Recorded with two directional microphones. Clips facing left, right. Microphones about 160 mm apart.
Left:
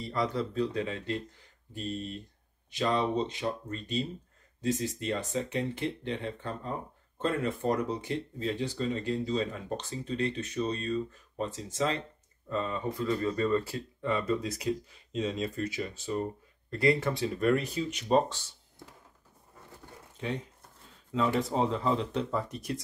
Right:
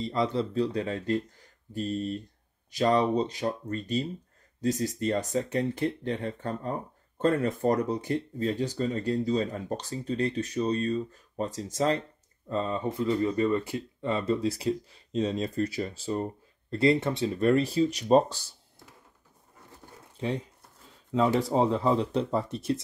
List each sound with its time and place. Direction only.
0.0 s speech: 25° right (ahead or behind)
21.1 s speech: 35° right (ahead or behind)